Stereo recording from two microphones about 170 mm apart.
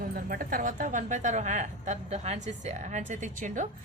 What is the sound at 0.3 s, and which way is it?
A woman's voice, 55° right (ahead or behind).